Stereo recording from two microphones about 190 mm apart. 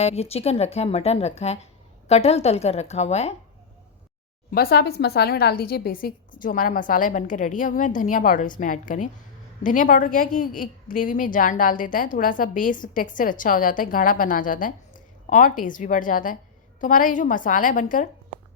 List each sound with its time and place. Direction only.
0.0 s speech: 35° left (ahead or behind)
4.5 s a woman's voice: 55° left (ahead or behind)